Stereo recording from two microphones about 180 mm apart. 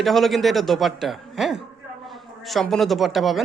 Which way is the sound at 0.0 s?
Centre (ahead or behind).